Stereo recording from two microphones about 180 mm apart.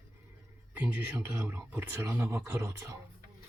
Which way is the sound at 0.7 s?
10° right (ahead or behind).